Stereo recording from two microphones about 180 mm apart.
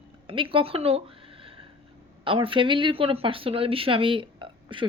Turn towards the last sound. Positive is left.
turn(degrees=-30)  # may be behind; listen again after turning